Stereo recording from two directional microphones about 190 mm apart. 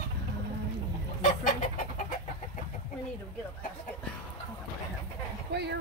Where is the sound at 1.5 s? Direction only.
45° left (ahead or behind).